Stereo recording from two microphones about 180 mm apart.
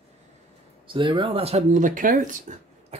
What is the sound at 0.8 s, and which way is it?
Speech, 25° right (ahead or behind).